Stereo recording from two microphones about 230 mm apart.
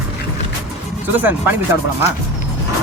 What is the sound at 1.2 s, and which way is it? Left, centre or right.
Speech, centre.